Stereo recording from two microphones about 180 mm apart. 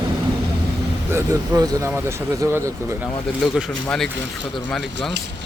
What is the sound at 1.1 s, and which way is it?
Speech, 20° right (ahead or behind).